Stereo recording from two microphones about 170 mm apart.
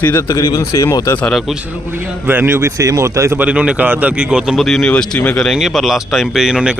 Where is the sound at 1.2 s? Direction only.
Centre (ahead or behind).